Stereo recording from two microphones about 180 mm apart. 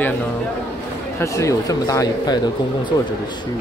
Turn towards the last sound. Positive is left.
turn(degrees=20)  # may be behind; listen again after turning